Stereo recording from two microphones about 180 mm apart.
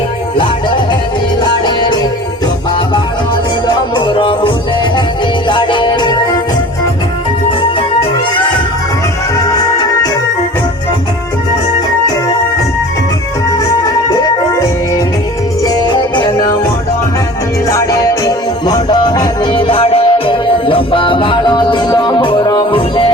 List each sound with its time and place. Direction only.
1.4 s music: 25° left (ahead or behind)
3.9 s music: 30° left (ahead or behind)
9.4 s music: 20° left (ahead or behind)
15.6 s music: 20° left (ahead or behind)
17.7 s music: 20° left (ahead or behind)